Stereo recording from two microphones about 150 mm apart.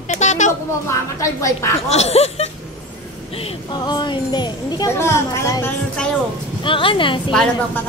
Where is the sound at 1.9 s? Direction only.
45° left (ahead or behind).